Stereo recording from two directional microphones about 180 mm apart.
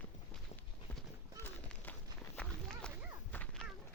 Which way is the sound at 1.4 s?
10° left (ahead or behind).